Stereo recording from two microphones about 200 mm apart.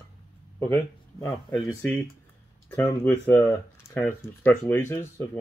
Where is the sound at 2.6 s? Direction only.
10° left (ahead or behind).